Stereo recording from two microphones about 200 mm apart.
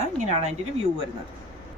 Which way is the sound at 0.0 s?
35° right (ahead or behind).